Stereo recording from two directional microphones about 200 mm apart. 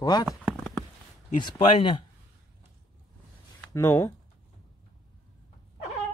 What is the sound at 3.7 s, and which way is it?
Speech, 15° left (ahead or behind).